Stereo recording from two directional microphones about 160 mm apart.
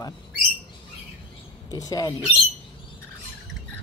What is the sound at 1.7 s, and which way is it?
Speech, 25° left (ahead or behind).